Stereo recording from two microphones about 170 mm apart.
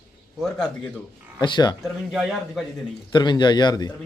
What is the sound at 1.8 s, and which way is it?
Speech, centre (ahead or behind).